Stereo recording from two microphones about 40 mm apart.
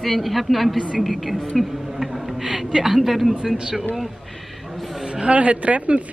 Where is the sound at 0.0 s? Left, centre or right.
Centre.